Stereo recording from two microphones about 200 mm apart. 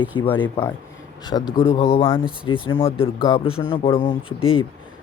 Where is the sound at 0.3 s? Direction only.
25° left (ahead or behind).